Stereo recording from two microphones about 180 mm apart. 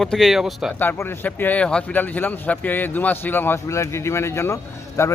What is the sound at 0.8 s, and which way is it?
Speech, 10° left (ahead or behind).